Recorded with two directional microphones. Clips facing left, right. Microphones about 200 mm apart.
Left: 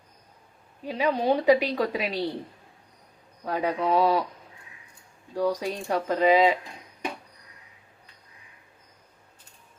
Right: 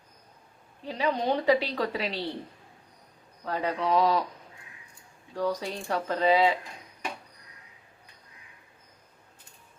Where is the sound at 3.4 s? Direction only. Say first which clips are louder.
Left 3 dB; 10° left (ahead or behind).